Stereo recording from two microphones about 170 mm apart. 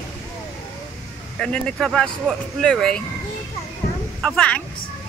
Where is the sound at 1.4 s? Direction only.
5° left (ahead or behind).